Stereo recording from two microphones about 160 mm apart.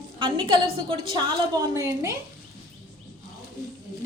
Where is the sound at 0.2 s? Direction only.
30° right (ahead or behind).